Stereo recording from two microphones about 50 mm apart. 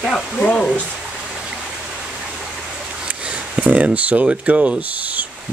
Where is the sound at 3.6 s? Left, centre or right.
Right.